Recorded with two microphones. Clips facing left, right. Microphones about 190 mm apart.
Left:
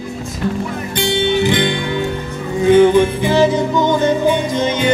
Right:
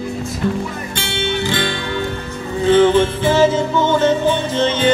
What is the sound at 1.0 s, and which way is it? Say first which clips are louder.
Music: left 7 dB; 20° left (ahead or behind).